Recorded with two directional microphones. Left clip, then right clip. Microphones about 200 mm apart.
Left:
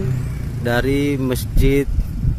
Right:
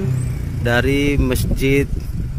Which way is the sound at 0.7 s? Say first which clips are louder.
Right 2 dB; 10° left (ahead or behind).